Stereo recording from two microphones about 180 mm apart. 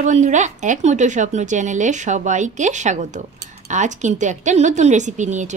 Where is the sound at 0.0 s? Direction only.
40° right (ahead or behind).